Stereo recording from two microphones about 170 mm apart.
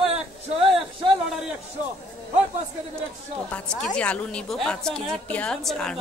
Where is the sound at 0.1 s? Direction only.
35° right (ahead or behind).